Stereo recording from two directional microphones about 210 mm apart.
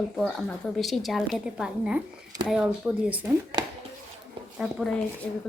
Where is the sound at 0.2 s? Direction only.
Centre (ahead or behind).